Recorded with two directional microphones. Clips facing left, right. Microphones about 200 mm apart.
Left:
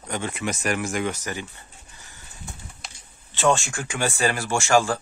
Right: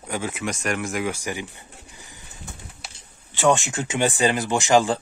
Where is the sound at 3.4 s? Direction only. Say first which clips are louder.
Right 2 dB; 20° right (ahead or behind).